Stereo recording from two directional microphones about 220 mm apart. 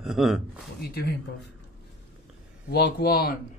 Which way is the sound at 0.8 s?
45° left (ahead or behind).